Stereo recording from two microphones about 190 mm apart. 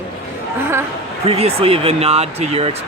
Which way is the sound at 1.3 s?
35° right (ahead or behind).